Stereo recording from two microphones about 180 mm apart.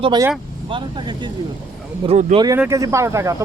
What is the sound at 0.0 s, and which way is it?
Speech, 25° right (ahead or behind).